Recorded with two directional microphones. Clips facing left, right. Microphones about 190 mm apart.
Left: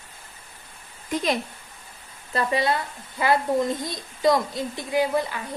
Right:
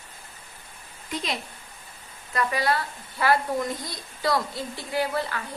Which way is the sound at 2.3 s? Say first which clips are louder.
Left 2 dB; 25° left (ahead or behind).